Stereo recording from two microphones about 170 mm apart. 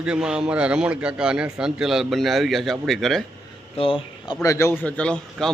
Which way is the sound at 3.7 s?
30° left (ahead or behind).